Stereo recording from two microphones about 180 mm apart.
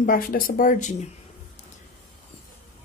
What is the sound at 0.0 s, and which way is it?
Speech, 50° left (ahead or behind).